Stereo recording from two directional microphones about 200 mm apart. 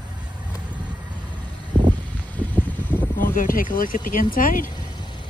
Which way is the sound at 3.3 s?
45° left (ahead or behind).